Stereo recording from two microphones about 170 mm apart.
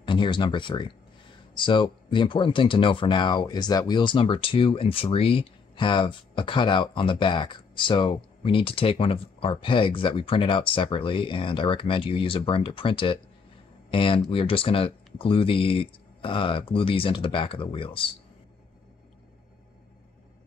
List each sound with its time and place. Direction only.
0.0 s speech: 30° left (ahead or behind)